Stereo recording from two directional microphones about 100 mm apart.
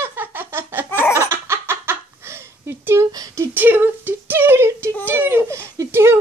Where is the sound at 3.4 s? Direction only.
20° right (ahead or behind).